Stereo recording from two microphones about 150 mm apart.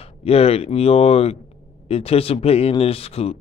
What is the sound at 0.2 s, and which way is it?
Speech, 40° left (ahead or behind).